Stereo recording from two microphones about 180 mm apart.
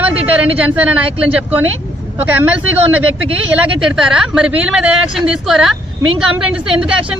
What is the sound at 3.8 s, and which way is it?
Speech, 5° right (ahead or behind).